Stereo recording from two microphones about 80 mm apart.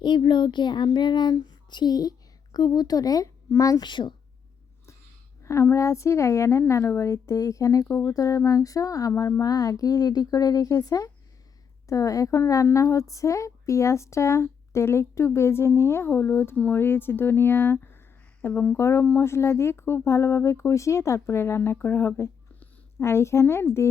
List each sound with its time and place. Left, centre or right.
0.0 s a child's voice: left
3.8 s speech: left
5.4 s speech: left
7.9 s speech: left
8.1 s speech: left
18.8 s speech: left